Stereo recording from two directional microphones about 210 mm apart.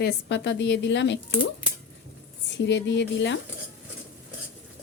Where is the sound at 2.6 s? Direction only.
55° left (ahead or behind).